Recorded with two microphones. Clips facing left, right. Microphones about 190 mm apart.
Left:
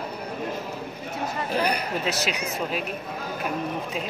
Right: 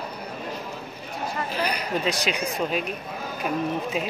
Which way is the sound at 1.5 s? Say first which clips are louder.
Left 5 dB; 55° left (ahead or behind).